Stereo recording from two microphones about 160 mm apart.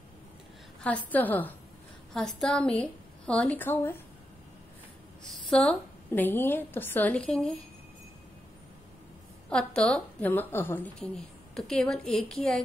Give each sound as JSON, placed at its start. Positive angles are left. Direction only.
{"t": 0.8, "sound": "a woman's voice", "side_deg": 10}
{"t": 5.3, "sound": "a woman's voice", "side_deg": 5}
{"t": 9.5, "sound": "a woman's voice", "side_deg": 5}